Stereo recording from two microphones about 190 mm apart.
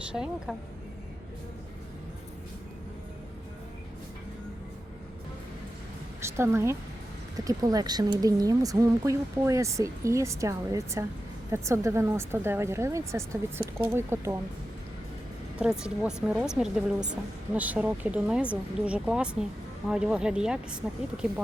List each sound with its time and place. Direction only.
0.1 s speech: 5° right (ahead or behind)
6.2 s speech: 15° right (ahead or behind)
15.8 s speech: 5° right (ahead or behind)